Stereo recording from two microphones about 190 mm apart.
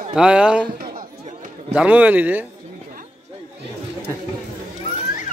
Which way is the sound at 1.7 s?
10° right (ahead or behind).